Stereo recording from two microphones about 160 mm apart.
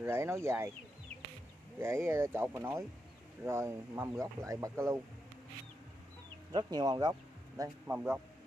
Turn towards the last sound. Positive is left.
turn(degrees=-20)  # may be behind; listen again after turning